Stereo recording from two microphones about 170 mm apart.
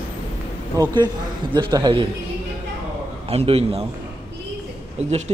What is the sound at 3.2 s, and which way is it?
Speech, 35° right (ahead or behind).